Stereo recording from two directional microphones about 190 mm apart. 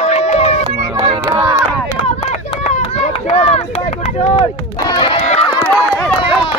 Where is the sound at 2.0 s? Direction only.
35° left (ahead or behind).